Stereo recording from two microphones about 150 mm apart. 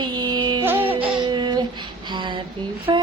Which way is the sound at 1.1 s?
30° right (ahead or behind).